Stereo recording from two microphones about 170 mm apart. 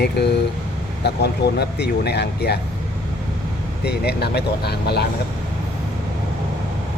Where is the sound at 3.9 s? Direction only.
70° left (ahead or behind).